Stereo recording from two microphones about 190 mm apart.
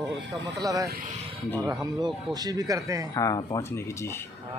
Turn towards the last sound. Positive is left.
turn(degrees=20)  # may be behind; listen again after turning